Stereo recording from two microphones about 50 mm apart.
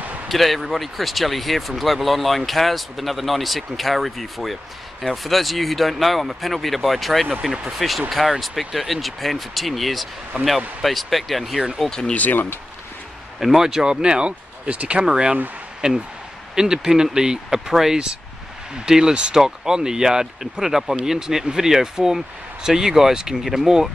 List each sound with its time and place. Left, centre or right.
0.3 s speech: centre
10.3 s speech: right
10.8 s speech: centre
11.5 s speech: centre
11.8 s speech: centre
12.1 s speech: left
13.4 s speech: centre; by 15.0 s right
15.0 s speech: centre